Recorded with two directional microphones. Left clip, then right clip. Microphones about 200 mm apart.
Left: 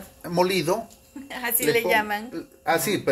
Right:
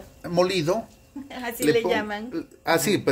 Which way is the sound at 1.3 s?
10° right (ahead or behind).